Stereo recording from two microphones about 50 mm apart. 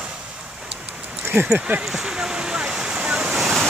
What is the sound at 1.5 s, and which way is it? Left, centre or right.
Speech, right.